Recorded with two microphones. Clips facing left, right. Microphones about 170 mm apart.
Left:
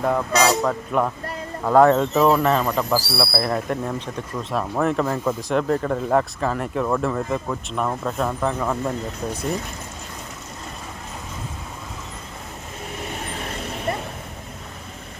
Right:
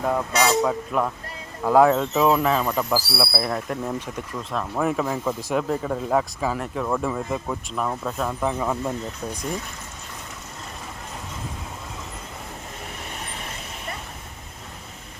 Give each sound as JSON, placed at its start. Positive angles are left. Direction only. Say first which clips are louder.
{"t": 0.0, "sound": "speech", "louder": "left 3 dB", "side_deg": -5}